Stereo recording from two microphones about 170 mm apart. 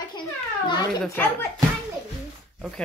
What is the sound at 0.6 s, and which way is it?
Speech, 25° left (ahead or behind).